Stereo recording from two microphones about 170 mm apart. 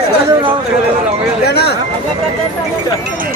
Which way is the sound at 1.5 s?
75° left (ahead or behind).